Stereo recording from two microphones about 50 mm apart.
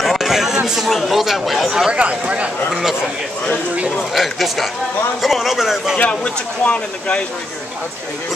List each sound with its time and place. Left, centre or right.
0.0 s a sound: centre
0.7 s speech: centre
1.9 s speech: right
2.7 s a man's voice: centre
4.1 s speech: centre
5.9 s speech: left